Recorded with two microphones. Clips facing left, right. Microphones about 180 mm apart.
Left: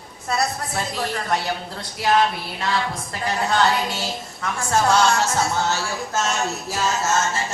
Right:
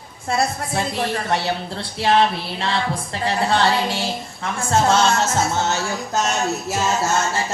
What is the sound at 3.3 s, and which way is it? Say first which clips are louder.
Music: right 1 dB; 30° right (ahead or behind).